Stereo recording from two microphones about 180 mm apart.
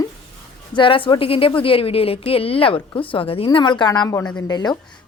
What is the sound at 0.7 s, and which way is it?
A woman's voice, 30° left (ahead or behind).